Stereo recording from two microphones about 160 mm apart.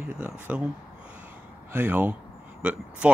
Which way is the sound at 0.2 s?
10° right (ahead or behind).